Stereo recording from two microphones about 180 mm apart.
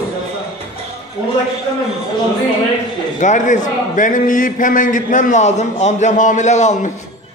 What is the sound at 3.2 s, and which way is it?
A man's voice, 45° left (ahead or behind).